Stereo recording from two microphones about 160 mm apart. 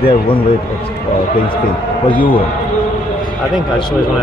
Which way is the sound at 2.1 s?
10° left (ahead or behind).